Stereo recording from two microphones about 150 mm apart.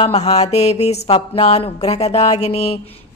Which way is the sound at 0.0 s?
45° left (ahead or behind).